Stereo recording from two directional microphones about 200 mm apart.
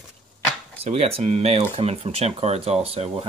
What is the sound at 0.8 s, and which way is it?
Speech, 30° right (ahead or behind).